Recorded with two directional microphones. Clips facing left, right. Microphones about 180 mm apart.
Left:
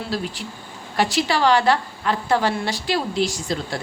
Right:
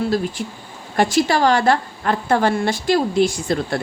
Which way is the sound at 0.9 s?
45° right (ahead or behind).